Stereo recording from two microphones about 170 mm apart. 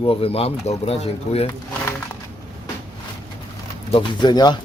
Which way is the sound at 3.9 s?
30° left (ahead or behind).